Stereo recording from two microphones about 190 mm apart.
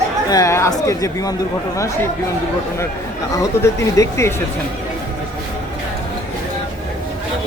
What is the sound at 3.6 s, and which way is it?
Speech, 15° left (ahead or behind).